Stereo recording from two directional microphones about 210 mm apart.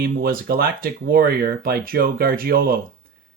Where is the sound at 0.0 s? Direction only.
45° right (ahead or behind).